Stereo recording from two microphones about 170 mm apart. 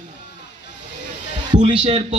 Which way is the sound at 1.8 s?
35° right (ahead or behind).